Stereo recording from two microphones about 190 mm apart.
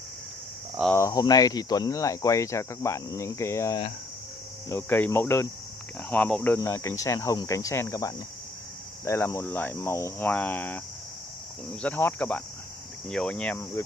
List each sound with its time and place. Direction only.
0.9 s speech: 15° left (ahead or behind)
11.8 s speech: 10° left (ahead or behind)
13.1 s cricket: 5° left (ahead or behind)